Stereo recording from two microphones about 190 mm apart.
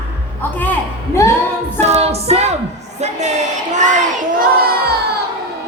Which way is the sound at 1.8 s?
35° right (ahead or behind).